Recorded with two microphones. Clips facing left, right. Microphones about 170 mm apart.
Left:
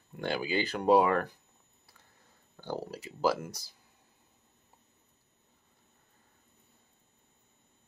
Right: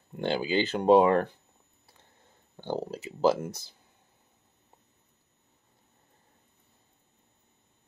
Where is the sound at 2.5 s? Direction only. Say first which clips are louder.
Right 4 dB; 25° right (ahead or behind).